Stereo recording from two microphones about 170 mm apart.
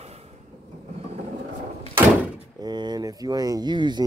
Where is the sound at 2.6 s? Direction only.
25° right (ahead or behind).